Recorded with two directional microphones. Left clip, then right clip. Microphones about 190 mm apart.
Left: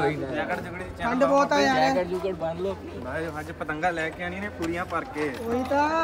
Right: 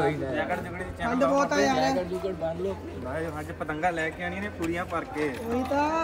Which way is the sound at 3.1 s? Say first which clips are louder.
Left 1 dB; 5° right (ahead or behind).